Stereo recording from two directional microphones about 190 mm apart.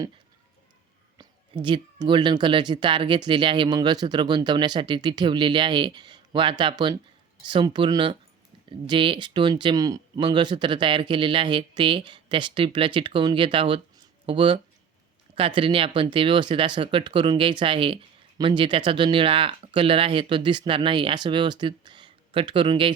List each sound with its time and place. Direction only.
1.2 s speech: 25° right (ahead or behind)